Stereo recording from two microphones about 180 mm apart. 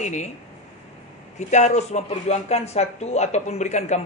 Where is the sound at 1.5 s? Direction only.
40° left (ahead or behind).